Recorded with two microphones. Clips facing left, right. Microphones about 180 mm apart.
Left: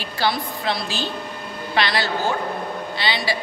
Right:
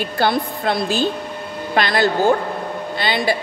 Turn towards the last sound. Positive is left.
turn(degrees=-50)  # may be behind; listen again after turning